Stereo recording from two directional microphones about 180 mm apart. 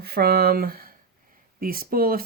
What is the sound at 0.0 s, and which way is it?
Speech, 60° right (ahead or behind).